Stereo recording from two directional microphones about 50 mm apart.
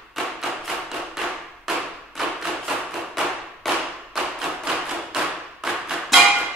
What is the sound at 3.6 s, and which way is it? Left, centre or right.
Thump, centre.